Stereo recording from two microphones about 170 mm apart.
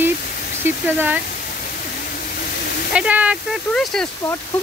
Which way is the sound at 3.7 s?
5° left (ahead or behind).